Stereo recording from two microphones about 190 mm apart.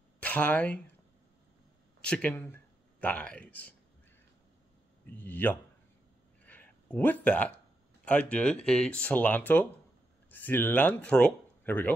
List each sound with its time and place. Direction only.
0.2 s speech: 10° left (ahead or behind)
2.0 s speech: 5° left (ahead or behind)
5.0 s speech: 10° left (ahead or behind)